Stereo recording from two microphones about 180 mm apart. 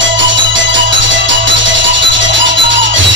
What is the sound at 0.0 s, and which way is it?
Music, 90° right.